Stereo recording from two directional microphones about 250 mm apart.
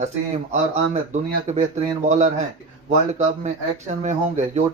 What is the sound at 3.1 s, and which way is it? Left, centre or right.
Speech, right.